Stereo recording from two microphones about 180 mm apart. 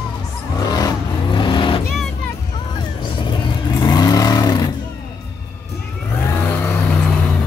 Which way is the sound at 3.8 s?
20° left (ahead or behind).